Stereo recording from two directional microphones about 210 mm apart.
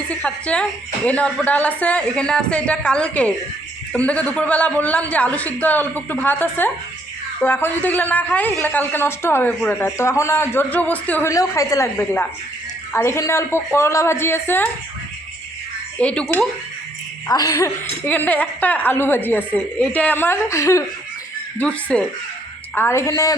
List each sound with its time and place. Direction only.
0.2 s a man's voice: 5° left (ahead or behind)
16.0 s speech: 5° left (ahead or behind)
17.2 s a man's voice: 15° left (ahead or behind)